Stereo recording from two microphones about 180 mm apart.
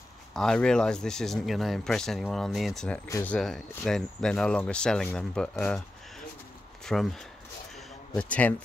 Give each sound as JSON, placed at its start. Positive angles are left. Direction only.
{"t": 0.3, "sound": "speech", "side_deg": 5}
{"t": 3.1, "sound": "a man's voice", "side_deg": 15}
{"t": 3.3, "sound": "speech", "side_deg": 0}
{"t": 6.8, "sound": "a man's voice", "side_deg": 0}